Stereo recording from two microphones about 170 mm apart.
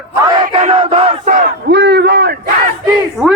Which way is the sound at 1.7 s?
85° right.